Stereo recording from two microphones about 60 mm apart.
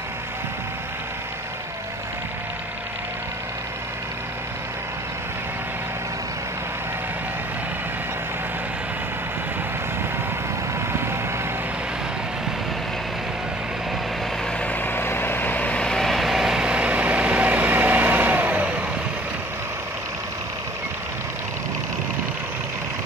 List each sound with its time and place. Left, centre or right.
14.6 s vehicle: left
15.8 s vehicle: centre
16.6 s vehicle: right